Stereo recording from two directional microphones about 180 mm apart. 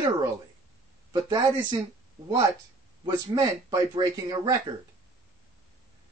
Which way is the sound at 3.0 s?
20° right (ahead or behind).